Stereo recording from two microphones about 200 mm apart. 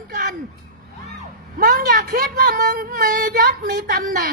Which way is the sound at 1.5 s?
45° right (ahead or behind).